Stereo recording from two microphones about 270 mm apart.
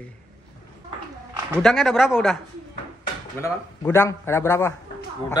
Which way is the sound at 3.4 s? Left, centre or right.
Centre.